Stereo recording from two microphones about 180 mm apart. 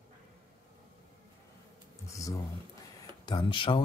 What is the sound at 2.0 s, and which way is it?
Speech, 15° left (ahead or behind).